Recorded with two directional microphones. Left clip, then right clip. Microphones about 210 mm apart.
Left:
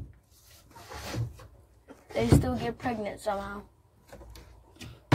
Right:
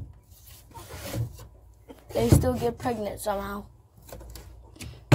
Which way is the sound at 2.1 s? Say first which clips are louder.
Right 3 dB; 20° right (ahead or behind).